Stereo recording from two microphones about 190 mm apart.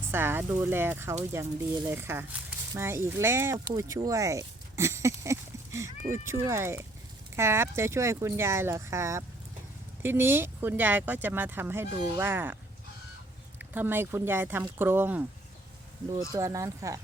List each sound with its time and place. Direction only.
0.1 s speech: 10° right (ahead or behind)
13.6 s speech: 10° right (ahead or behind)
16.3 s speech: 15° right (ahead or behind)